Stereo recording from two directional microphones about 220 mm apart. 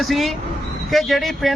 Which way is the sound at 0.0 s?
Centre (ahead or behind).